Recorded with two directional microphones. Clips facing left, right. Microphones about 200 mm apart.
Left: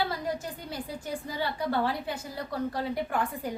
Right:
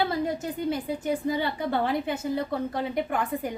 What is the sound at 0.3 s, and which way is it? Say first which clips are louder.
A woman's voice: right 6 dB; 20° right (ahead or behind).